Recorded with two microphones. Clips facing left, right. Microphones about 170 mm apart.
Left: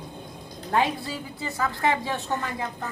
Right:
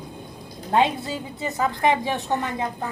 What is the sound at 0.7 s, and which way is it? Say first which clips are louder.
A woman's voice: right 4 dB; 20° right (ahead or behind).